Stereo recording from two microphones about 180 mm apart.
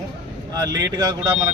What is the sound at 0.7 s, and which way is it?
Speech, 20° right (ahead or behind).